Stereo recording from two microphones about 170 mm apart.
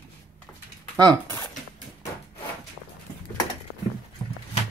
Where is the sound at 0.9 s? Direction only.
25° right (ahead or behind).